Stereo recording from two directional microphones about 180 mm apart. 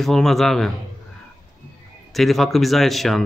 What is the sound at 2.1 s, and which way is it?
Speech, centre (ahead or behind).